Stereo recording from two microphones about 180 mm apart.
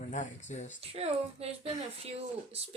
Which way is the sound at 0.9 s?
35° right (ahead or behind).